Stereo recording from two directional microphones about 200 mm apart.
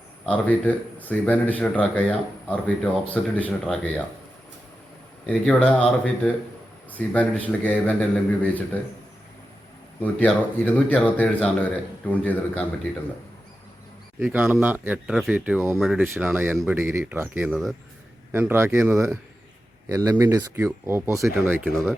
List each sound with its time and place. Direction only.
0.3 s a man's voice: 10° left (ahead or behind)
5.2 s a man's voice: 5° left (ahead or behind)
10.0 s a man's voice: 10° left (ahead or behind)
14.2 s speech: 10° right (ahead or behind)